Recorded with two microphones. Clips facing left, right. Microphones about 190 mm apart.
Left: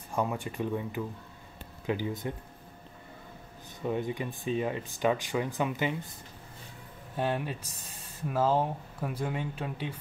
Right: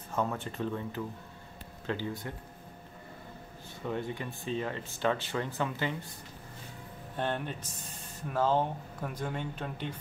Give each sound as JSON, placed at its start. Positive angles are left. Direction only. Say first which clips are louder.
{"t": 0.1, "sound": "speech", "louder": "left 1 dB", "side_deg": 10}
{"t": 3.8, "sound": "speech", "louder": "left 4 dB", "side_deg": 15}
{"t": 7.2, "sound": "speech", "louder": "left 3 dB", "side_deg": 5}